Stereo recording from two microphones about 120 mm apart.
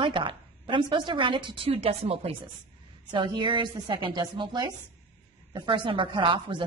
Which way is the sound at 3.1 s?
40° right (ahead or behind).